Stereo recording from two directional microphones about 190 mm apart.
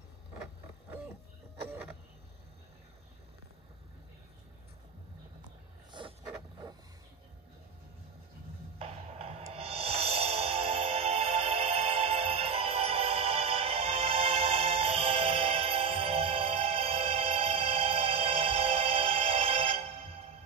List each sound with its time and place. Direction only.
1.7 s vehicle: 10° right (ahead or behind)
5.9 s vehicle: 25° right (ahead or behind)
8.7 s music: 30° right (ahead or behind)